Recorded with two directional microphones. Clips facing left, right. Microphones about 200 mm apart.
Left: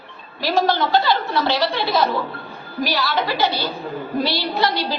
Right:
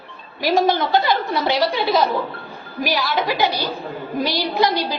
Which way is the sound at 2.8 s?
20° right (ahead or behind).